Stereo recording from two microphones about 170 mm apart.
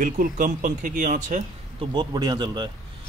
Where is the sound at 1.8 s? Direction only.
25° right (ahead or behind).